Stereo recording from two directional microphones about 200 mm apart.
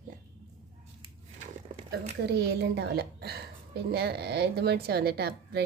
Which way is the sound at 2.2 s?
55° right (ahead or behind).